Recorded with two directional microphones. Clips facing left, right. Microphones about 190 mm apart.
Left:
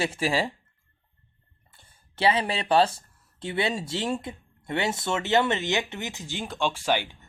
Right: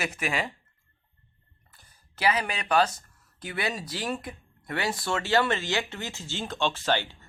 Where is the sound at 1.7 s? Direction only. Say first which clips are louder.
Left 3 dB; 25° left (ahead or behind).